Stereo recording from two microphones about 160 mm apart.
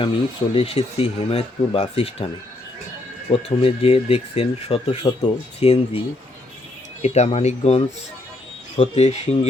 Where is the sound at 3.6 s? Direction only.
35° left (ahead or behind).